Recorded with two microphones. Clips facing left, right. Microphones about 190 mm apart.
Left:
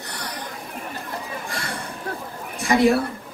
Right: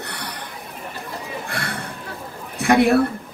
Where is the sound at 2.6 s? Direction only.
60° right (ahead or behind).